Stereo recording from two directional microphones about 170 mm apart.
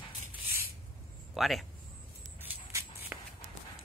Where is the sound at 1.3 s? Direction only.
Centre (ahead or behind).